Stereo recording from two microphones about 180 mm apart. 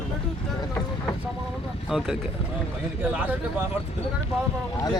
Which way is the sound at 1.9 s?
Centre (ahead or behind).